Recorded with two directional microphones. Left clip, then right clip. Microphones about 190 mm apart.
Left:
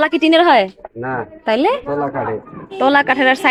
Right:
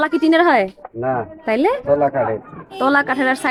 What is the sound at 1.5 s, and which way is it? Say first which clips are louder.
A man's voice: even; 10° right (ahead or behind).